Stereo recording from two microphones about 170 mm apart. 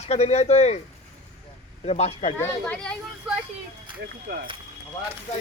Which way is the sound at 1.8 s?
40° left (ahead or behind).